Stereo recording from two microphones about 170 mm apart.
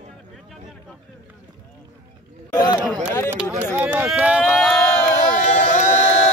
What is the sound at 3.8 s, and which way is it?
Run, 10° right (ahead or behind).